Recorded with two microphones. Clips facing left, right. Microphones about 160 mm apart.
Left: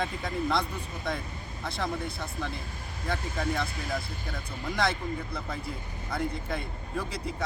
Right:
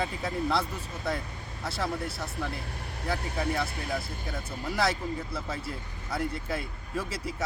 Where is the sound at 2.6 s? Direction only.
70° right (ahead or behind).